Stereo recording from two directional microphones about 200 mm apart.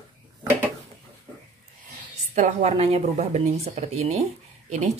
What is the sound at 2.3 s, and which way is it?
Speech, 35° right (ahead or behind).